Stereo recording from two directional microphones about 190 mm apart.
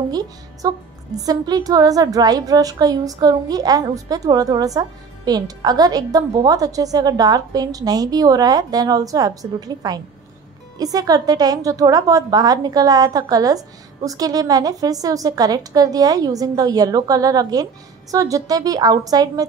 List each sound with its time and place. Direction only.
0.1 s a woman's voice: 20° right (ahead or behind)